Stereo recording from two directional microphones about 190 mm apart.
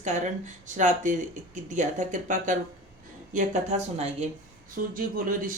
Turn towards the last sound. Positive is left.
turn(degrees=-45)  # may be behind; listen again after turning